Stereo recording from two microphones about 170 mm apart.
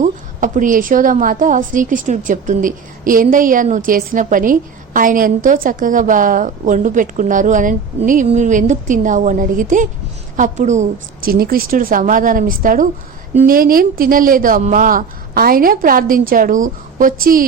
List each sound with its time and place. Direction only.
0.0 s a woman's voice: 50° right (ahead or behind)